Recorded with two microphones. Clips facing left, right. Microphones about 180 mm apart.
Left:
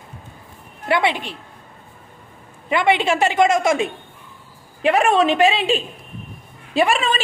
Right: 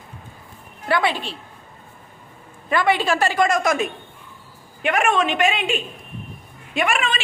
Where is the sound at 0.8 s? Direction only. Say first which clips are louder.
Left 2 dB; 20° left (ahead or behind).